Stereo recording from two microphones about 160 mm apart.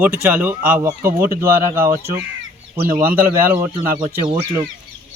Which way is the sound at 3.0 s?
15° right (ahead or behind).